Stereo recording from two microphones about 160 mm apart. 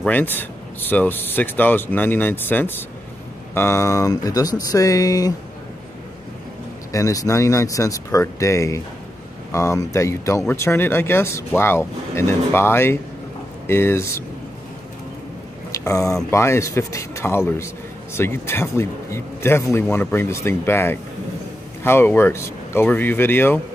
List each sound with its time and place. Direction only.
0.0 s a man's voice: 10° left (ahead or behind)
6.9 s a man's voice: 20° left (ahead or behind)
15.7 s a man's voice: 20° left (ahead or behind)